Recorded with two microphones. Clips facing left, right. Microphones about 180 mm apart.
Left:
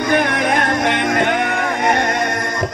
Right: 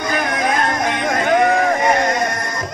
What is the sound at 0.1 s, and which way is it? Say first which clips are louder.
Music: left 3 dB; 70° left (ahead or behind).